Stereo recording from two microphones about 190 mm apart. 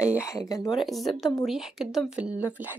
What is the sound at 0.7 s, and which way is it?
A woman's voice, centre (ahead or behind).